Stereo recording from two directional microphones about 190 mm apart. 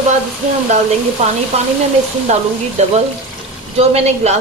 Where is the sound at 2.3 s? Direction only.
40° right (ahead or behind).